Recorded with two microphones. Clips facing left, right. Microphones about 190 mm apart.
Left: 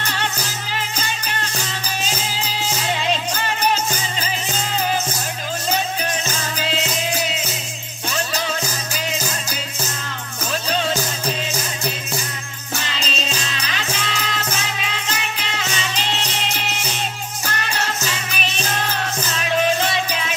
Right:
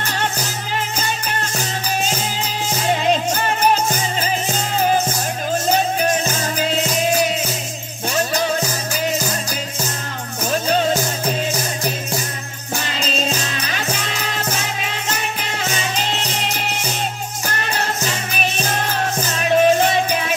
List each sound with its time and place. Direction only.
2.7 s music: 45° right (ahead or behind)
6.0 s music: 45° right (ahead or behind)
10.5 s music: 45° right (ahead or behind)
12.8 s music: 45° right (ahead or behind)
18.0 s music: 40° right (ahead or behind)